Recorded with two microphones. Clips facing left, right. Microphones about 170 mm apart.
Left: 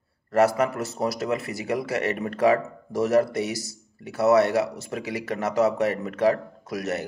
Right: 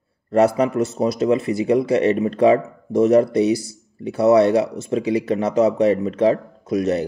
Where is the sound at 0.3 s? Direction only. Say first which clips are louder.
Right 4 dB; 20° right (ahead or behind).